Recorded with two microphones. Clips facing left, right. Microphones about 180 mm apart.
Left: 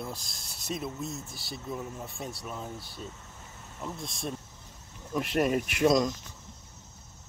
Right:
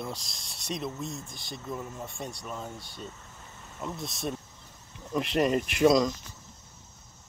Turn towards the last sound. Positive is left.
turn(degrees=0)  # may be behind; listen again after turning